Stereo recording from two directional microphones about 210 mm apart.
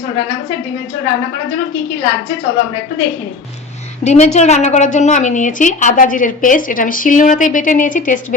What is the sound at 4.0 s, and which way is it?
A woman's voice, 30° left (ahead or behind).